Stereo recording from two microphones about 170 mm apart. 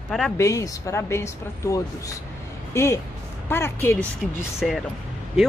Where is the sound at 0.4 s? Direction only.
20° left (ahead or behind).